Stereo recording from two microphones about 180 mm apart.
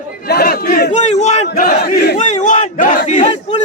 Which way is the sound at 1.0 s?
40° left (ahead or behind).